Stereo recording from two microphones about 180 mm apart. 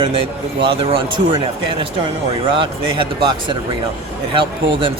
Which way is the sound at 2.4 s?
25° right (ahead or behind).